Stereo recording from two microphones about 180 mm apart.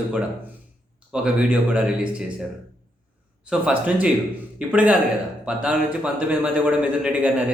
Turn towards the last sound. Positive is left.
turn(degrees=-5)  # may be behind; listen again after turning